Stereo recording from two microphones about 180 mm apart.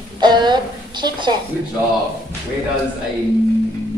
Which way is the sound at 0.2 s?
25° right (ahead or behind).